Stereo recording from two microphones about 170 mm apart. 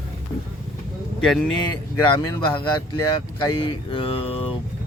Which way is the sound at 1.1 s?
5° left (ahead or behind).